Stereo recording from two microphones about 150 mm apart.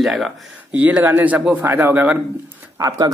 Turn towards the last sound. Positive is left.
turn(degrees=-25)  # may be behind; listen again after turning